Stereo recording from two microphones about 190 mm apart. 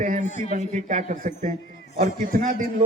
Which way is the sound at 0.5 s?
40° right (ahead or behind).